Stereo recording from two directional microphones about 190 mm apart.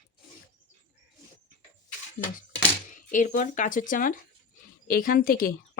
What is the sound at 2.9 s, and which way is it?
Speech, 45° left (ahead or behind).